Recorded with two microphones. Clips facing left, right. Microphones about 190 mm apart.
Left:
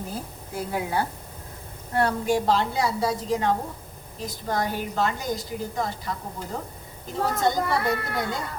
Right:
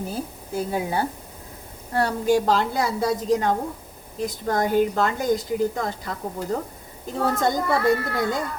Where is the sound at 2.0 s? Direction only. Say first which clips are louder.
Right 3 dB; 45° right (ahead or behind).